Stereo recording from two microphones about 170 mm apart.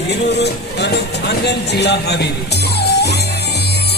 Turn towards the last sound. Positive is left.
turn(degrees=75)  # may be behind; listen again after turning